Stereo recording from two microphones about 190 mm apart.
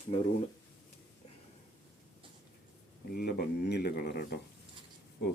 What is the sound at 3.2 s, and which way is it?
Speech, 55° left (ahead or behind).